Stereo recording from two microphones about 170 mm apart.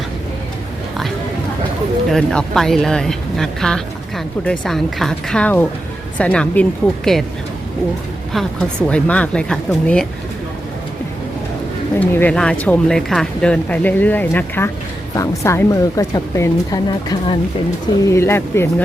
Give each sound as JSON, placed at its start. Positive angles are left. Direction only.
{"t": 2.0, "sound": "speech", "side_deg": 0}
{"t": 8.9, "sound": "speech", "side_deg": 10}
{"t": 11.9, "sound": "a woman's voice", "side_deg": 10}